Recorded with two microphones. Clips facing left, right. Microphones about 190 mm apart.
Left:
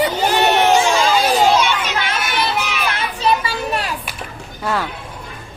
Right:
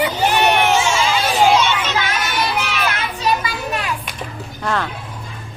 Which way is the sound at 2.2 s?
10° left (ahead or behind).